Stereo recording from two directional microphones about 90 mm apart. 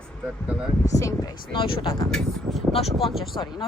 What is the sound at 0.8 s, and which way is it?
Speech, 40° left (ahead or behind).